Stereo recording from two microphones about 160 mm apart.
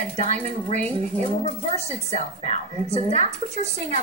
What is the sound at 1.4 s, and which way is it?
Speech, 35° left (ahead or behind).